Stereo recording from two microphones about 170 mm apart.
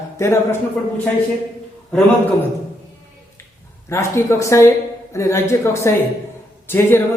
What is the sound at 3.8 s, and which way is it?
A man's voice, 15° left (ahead or behind).